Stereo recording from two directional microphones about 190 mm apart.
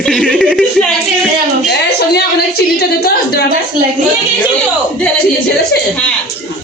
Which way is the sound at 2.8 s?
60° left (ahead or behind).